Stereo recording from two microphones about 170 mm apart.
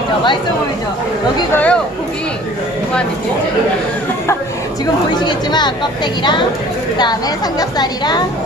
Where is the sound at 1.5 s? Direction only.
5° left (ahead or behind).